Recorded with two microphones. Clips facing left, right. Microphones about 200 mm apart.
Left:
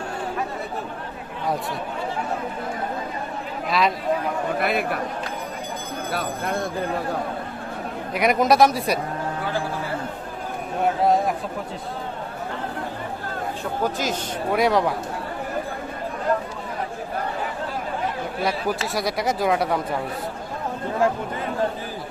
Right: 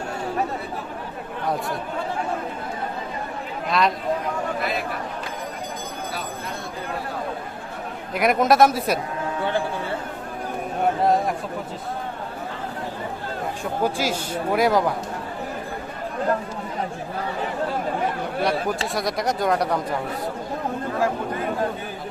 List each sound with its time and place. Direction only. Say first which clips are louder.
3.7 s speech: even; centre (ahead or behind)
4.6 s speech: left 3 dB; 60° left (ahead or behind)
6.1 s speech: left 5 dB; 60° left (ahead or behind)
8.1 s a man's voice: even; centre (ahead or behind)
11.0 s a man's voice: left 1 dB; centre (ahead or behind)
13.8 s a man's voice: right 2 dB; 10° right (ahead or behind)
18.9 s a man's voice: even; centre (ahead or behind)